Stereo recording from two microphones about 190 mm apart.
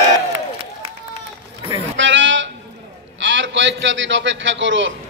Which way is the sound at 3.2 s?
75° right (ahead or behind).